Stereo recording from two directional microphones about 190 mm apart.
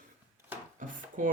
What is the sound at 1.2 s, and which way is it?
Speech, 45° right (ahead or behind).